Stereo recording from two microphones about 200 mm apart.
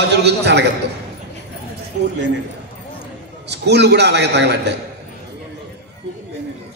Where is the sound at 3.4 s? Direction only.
55° right (ahead or behind).